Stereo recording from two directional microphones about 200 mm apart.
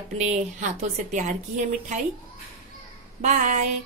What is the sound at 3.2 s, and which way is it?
Speech, 40° right (ahead or behind).